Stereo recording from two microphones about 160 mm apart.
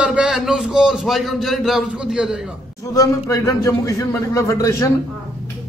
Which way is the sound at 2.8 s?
20° left (ahead or behind).